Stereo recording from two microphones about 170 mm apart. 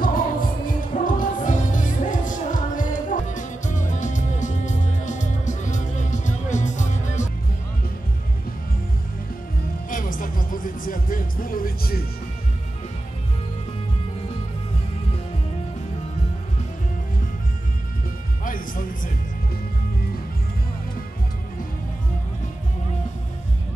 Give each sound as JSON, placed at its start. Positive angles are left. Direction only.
{"t": 0.0, "sound": "music", "side_deg": 55}
{"t": 9.8, "sound": "music", "side_deg": 55}
{"t": 18.4, "sound": "music", "side_deg": 55}